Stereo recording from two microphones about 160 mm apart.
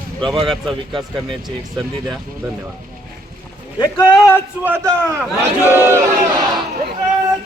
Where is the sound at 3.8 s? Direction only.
25° left (ahead or behind).